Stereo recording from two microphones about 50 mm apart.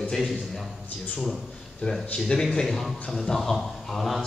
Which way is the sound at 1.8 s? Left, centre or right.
Left.